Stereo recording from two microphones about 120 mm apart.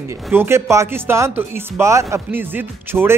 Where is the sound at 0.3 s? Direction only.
20° right (ahead or behind).